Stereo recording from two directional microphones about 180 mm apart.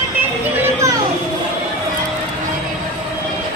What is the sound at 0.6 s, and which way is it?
Children playing, 15° right (ahead or behind).